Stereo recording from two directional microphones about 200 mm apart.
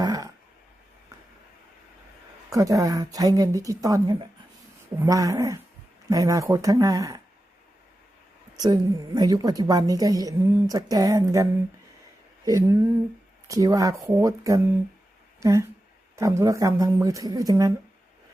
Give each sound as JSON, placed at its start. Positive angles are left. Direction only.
{"t": 0.0, "sound": "a sound", "side_deg": -20}
{"t": 2.5, "sound": "a woman's voice", "side_deg": -15}
{"t": 8.5, "sound": "a woman's voice", "side_deg": -20}
{"t": 12.5, "sound": "a woman's voice", "side_deg": -15}